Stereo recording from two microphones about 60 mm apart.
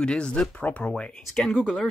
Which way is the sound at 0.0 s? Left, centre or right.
Centre.